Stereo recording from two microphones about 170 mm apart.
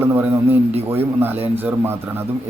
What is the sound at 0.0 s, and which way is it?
Speech, 10° right (ahead or behind).